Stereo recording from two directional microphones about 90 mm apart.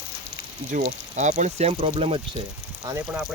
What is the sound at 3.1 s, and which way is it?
Speech, 20° right (ahead or behind).